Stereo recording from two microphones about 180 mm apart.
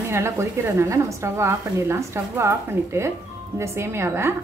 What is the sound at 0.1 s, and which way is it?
A woman's voice, 15° right (ahead or behind).